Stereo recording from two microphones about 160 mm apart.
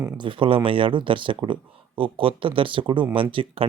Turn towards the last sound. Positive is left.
turn(degrees=-35)  # may be behind; listen again after turning